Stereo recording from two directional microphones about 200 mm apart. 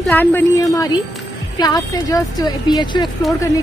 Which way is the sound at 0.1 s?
10° left (ahead or behind).